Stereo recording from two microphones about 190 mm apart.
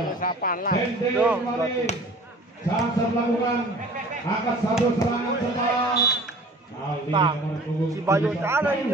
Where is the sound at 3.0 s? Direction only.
20° left (ahead or behind).